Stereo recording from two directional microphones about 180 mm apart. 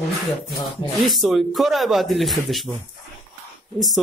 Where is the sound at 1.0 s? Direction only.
Centre (ahead or behind).